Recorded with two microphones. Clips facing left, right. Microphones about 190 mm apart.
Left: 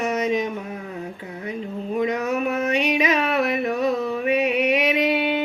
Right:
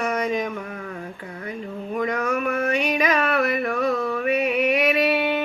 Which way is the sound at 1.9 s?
20° left (ahead or behind).